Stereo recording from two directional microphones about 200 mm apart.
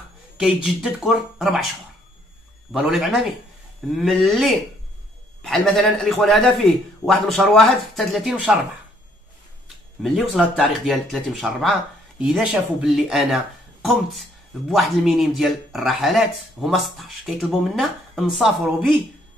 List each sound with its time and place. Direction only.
0.4 s speech: 5° right (ahead or behind)
2.7 s speech: centre (ahead or behind)
10.0 s speech: centre (ahead or behind)
14.7 s speech: centre (ahead or behind)